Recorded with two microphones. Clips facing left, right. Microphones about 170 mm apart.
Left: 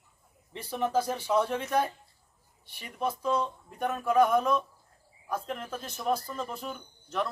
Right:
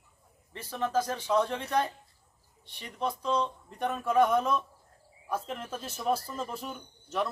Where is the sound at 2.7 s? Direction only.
5° left (ahead or behind).